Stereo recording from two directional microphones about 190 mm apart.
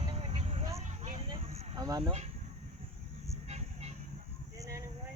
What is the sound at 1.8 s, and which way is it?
Speech, 20° right (ahead or behind).